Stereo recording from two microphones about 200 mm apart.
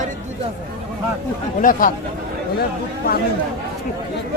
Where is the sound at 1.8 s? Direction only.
45° left (ahead or behind).